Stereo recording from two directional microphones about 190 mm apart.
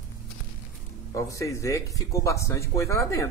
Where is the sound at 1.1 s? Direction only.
15° left (ahead or behind).